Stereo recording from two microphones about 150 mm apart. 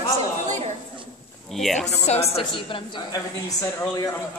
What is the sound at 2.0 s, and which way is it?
A woman's voice, 45° left (ahead or behind).